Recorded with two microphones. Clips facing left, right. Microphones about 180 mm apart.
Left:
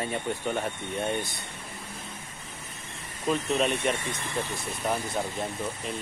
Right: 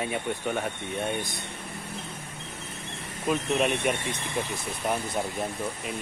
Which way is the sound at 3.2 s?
5° right (ahead or behind).